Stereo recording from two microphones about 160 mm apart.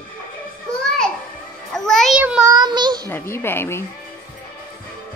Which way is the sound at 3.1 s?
15° left (ahead or behind).